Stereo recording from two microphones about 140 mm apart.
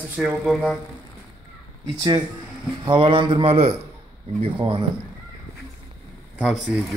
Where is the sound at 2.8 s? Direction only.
35° right (ahead or behind).